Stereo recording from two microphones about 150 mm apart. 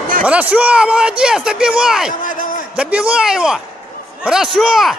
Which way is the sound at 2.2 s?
65° left (ahead or behind).